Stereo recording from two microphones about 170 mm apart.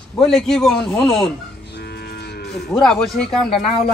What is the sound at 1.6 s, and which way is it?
Livestock, 75° left (ahead or behind).